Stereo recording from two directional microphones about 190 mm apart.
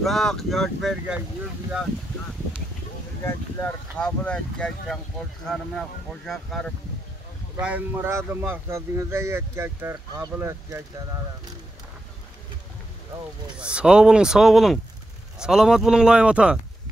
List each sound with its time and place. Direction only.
0.0 s speech: centre (ahead or behind)
3.3 s speech: 10° left (ahead or behind)
7.6 s speech: 10° right (ahead or behind)
13.6 s speech: 5° right (ahead or behind)